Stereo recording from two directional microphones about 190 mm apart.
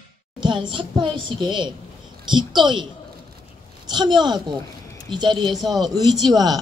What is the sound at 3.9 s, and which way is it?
A woman's voice, 20° right (ahead or behind).